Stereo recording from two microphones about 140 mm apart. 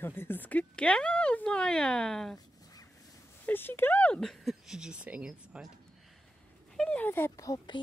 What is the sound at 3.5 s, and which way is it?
Speech, 15° left (ahead or behind).